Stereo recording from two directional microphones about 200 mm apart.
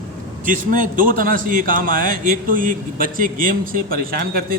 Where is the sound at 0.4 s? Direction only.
40° right (ahead or behind).